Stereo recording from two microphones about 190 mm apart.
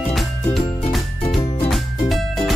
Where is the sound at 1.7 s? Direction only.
Centre (ahead or behind).